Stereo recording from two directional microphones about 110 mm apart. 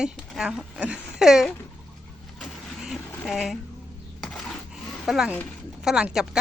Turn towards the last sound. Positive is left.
turn(degrees=-10)  # may be behind; listen again after turning